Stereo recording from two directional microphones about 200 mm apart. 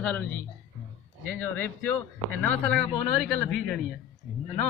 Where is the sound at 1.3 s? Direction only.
10° left (ahead or behind).